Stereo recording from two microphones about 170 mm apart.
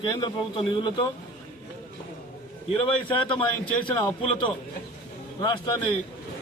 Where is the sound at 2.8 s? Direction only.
30° left (ahead or behind).